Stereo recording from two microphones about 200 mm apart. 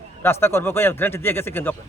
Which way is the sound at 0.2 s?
10° left (ahead or behind).